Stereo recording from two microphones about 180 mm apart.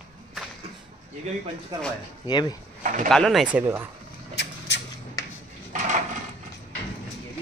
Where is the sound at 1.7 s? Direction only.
20° right (ahead or behind).